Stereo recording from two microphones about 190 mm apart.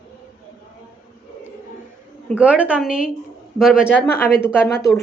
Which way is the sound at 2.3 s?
5° right (ahead or behind).